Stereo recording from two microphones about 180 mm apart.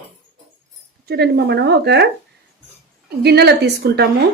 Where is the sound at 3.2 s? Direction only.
65° right (ahead or behind).